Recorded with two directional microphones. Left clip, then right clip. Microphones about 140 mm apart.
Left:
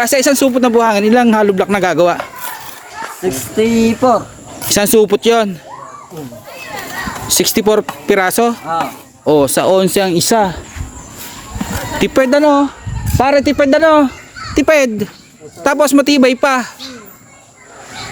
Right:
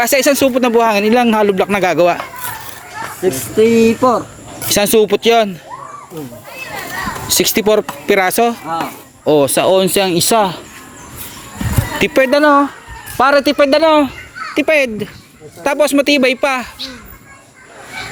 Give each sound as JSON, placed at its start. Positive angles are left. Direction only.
{"t": 0.0, "sound": "a man's voice", "side_deg": 25}
{"t": 3.5, "sound": "a man's voice", "side_deg": 25}
{"t": 7.3, "sound": "a man's voice", "side_deg": 25}
{"t": 11.9, "sound": "a man's voice", "side_deg": 25}
{"t": 14.5, "sound": "speech", "side_deg": 50}
{"t": 15.6, "sound": "speech", "side_deg": 40}